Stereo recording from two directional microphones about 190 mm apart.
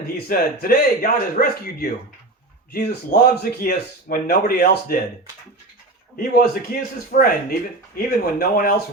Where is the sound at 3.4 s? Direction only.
50° left (ahead or behind).